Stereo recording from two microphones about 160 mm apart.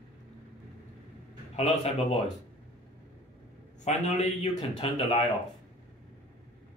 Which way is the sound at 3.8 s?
45° left (ahead or behind).